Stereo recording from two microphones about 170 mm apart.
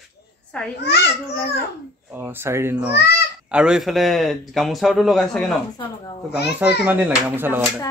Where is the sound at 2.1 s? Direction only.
15° right (ahead or behind); by 5.6 s 5° left (ahead or behind).